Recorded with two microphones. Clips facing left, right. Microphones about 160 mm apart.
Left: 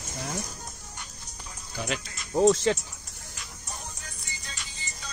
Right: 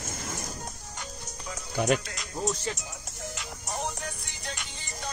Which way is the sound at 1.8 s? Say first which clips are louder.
Right 7 dB; 60° right (ahead or behind).